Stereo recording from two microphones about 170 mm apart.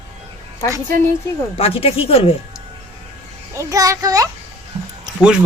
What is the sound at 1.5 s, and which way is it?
Speech, 35° left (ahead or behind).